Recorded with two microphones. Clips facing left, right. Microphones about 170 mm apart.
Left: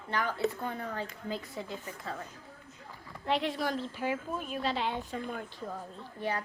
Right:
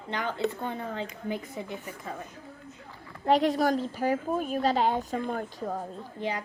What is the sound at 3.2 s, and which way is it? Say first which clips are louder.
A woman's voice: right 8 dB; 40° right (ahead or behind).